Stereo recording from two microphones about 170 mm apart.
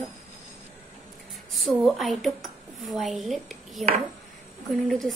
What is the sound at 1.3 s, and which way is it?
Speech, centre (ahead or behind).